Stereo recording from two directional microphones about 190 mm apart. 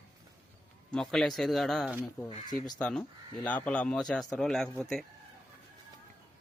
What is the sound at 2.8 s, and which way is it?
Speech, 5° left (ahead or behind).